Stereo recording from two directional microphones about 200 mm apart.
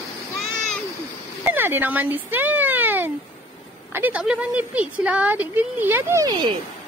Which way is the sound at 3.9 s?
10° right (ahead or behind).